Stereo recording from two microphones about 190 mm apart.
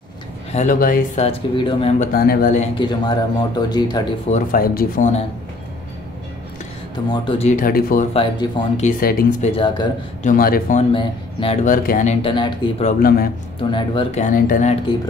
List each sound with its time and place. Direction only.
0.5 s speech: 40° left (ahead or behind)
1.2 s speech: 25° left (ahead or behind)
2.1 s speech: 50° left (ahead or behind)
2.7 s speech: 25° left (ahead or behind)
4.3 s speech: 50° left (ahead or behind)
7.1 s speech: 30° left (ahead or behind); by 8.0 s 50° left (ahead or behind)
8.1 s speech: 30° left (ahead or behind)
9.0 s speech: 50° left (ahead or behind)
9.5 s speech: 25° left (ahead or behind)
10.2 s speech: 50° left (ahead or behind)
10.8 s speech: 25° left (ahead or behind)
11.6 s speech: 45° left (ahead or behind); by 14.2 s 25° left (ahead or behind)
14.2 s speech: 45° left (ahead or behind)